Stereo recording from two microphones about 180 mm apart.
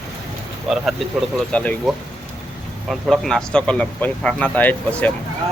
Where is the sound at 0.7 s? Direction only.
Centre (ahead or behind).